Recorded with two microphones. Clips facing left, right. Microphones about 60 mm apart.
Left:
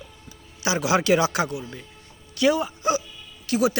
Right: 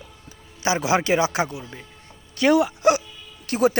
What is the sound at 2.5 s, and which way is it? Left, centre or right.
Speech, right.